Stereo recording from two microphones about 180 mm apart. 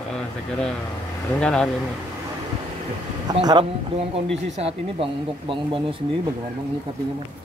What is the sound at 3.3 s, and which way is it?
Speech, 25° right (ahead or behind).